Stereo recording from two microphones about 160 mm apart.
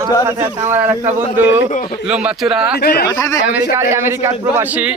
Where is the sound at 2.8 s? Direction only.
75° left (ahead or behind).